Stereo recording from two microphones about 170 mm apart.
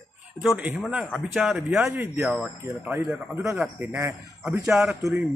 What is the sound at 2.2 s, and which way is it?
Speech, centre (ahead or behind).